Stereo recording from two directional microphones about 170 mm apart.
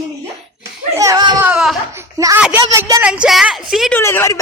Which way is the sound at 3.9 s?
15° left (ahead or behind).